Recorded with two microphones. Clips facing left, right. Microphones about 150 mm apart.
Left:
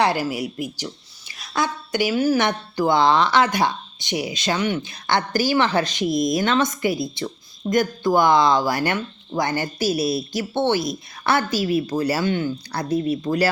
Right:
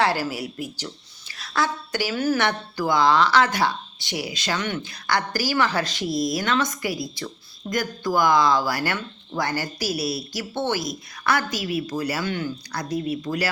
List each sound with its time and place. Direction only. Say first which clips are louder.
0.0 s speech: left 2 dB; 15° left (ahead or behind)